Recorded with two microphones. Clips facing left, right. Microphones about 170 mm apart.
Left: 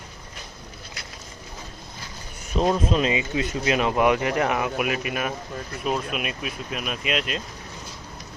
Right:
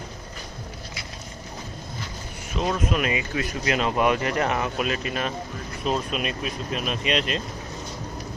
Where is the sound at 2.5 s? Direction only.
35° left (ahead or behind); by 7.4 s 5° left (ahead or behind).